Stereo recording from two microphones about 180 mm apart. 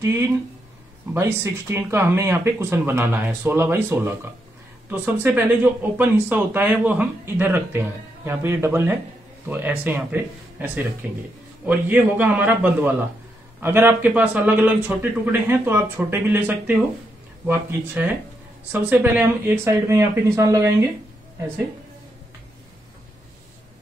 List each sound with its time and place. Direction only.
0.0 s speech: 15° right (ahead or behind)